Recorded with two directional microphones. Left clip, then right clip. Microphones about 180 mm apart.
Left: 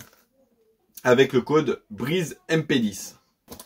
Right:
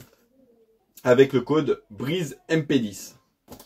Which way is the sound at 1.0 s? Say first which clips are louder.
Right 1 dB; 20° left (ahead or behind).